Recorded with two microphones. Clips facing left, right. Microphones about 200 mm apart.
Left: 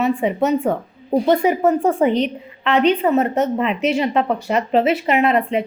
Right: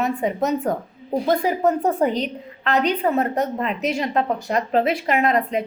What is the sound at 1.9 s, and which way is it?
Speech, 40° right (ahead or behind).